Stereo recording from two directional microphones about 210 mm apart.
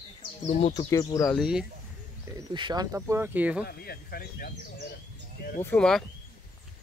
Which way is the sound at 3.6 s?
45° left (ahead or behind).